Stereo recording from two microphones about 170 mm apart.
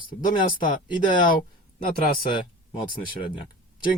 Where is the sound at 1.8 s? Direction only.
55° left (ahead or behind).